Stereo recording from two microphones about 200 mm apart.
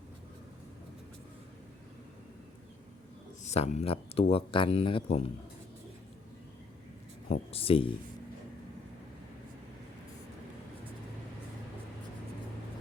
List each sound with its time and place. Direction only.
3.4 s speech: 35° left (ahead or behind)
7.3 s speech: 30° left (ahead or behind)